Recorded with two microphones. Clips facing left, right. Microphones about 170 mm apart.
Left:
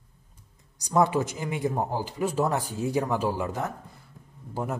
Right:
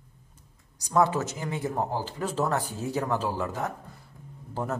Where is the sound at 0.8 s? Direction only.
15° left (ahead or behind).